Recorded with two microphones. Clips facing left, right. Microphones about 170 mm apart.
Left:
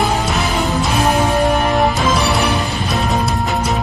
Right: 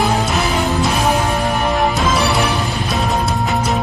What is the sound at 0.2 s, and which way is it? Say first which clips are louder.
Music: right 1 dB; centre (ahead or behind).